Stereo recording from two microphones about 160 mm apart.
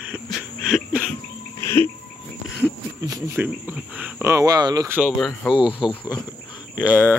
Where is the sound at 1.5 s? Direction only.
15° left (ahead or behind).